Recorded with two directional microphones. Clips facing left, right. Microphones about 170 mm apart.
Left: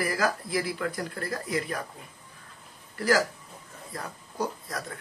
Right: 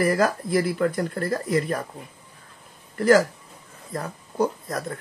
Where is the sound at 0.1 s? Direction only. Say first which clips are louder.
Right 6 dB; 50° right (ahead or behind).